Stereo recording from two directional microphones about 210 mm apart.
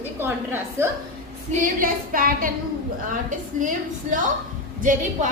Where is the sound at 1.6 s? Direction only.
40° right (ahead or behind).